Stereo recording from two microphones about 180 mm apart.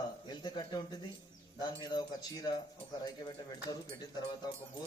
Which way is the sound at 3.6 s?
20° left (ahead or behind).